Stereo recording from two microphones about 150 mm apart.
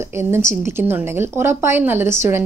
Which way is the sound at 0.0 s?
15° right (ahead or behind).